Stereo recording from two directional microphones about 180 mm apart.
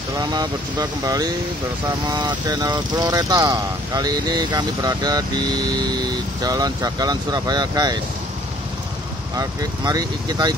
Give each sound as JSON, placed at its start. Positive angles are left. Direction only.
{"t": 0.1, "sound": "speech", "side_deg": -20}
{"t": 9.4, "sound": "speech", "side_deg": -20}